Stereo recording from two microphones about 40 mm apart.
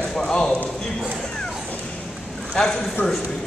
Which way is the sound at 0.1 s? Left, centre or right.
Centre.